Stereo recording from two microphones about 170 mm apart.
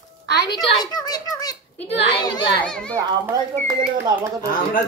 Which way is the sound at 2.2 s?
25° left (ahead or behind).